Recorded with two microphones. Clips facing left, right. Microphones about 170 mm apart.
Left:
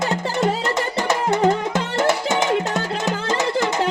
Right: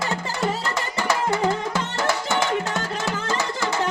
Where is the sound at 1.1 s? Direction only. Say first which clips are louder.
Left 4 dB; 20° left (ahead or behind).